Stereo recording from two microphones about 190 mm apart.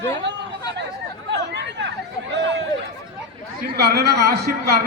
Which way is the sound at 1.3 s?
65° right (ahead or behind).